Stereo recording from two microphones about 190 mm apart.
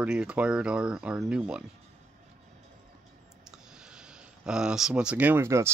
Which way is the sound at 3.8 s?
5° right (ahead or behind).